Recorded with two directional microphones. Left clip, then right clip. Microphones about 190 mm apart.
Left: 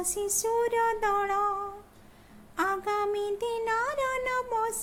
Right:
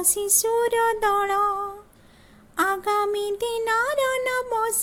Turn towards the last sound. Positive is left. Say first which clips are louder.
# right 5 dB
turn(degrees=-15)  # may be behind; listen again after turning